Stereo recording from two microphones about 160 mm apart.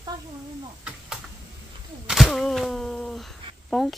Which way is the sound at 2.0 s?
Centre (ahead or behind).